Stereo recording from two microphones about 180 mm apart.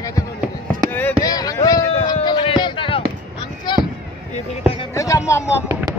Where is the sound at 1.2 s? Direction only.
20° left (ahead or behind).